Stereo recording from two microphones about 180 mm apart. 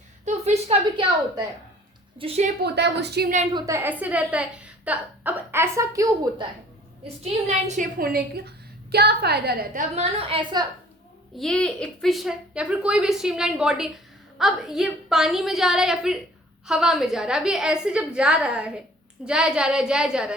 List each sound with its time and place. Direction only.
0.3 s a woman's voice: 40° right (ahead or behind)
2.1 s a woman's voice: 35° right (ahead or behind)
2.6 s a woman's voice: 70° right (ahead or behind)
3.5 s a woman's voice: 15° right (ahead or behind)
7.2 s a woman's voice: 40° right (ahead or behind); by 9.8 s 60° right (ahead or behind)
9.9 s a woman's voice: 35° right (ahead or behind)
11.3 s a woman's voice: 5° left (ahead or behind)